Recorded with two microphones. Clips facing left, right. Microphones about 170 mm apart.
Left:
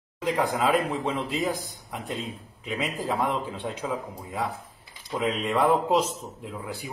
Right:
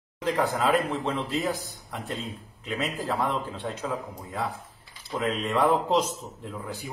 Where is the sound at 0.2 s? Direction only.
10° left (ahead or behind).